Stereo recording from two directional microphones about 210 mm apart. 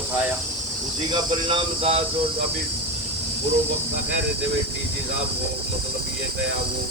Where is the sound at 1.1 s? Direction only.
20° right (ahead or behind).